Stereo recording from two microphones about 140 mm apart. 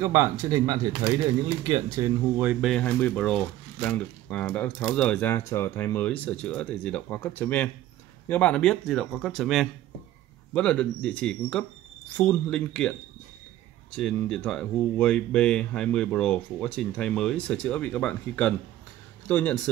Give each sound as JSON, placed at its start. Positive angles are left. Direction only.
{"t": 0.0, "sound": "speech", "side_deg": -20}
{"t": 2.8, "sound": "speech", "side_deg": 10}
{"t": 13.9, "sound": "speech", "side_deg": 5}